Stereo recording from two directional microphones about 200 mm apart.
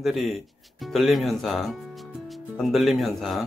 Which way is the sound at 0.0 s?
Centre (ahead or behind).